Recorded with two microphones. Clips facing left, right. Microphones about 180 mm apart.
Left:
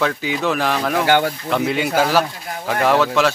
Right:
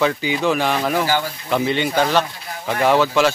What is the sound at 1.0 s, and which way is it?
Speech, 65° left (ahead or behind).